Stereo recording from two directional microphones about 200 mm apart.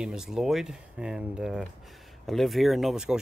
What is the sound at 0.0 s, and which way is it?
Speech, 5° right (ahead or behind).